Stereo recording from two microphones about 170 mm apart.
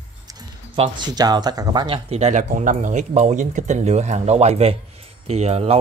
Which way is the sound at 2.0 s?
40° right (ahead or behind).